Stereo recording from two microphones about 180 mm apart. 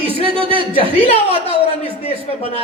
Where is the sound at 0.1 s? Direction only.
30° right (ahead or behind).